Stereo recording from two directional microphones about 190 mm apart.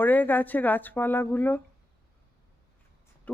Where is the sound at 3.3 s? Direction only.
5° left (ahead or behind).